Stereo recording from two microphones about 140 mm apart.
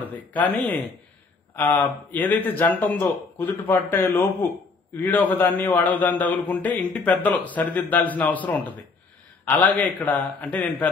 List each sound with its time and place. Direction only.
0.0 s speech: 10° left (ahead or behind)
1.6 s speech: 10° left (ahead or behind)